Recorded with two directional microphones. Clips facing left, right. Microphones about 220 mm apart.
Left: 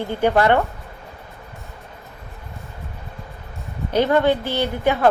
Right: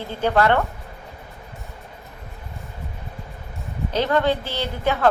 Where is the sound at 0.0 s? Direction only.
15° left (ahead or behind).